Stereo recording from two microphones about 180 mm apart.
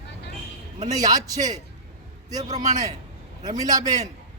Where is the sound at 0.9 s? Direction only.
20° right (ahead or behind).